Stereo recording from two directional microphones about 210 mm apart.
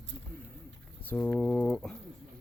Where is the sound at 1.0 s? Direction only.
10° left (ahead or behind).